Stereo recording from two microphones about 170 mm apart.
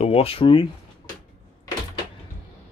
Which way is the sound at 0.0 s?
35° left (ahead or behind).